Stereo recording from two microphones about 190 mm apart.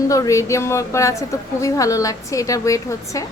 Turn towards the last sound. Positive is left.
turn(degrees=15)  # may be behind; listen again after turning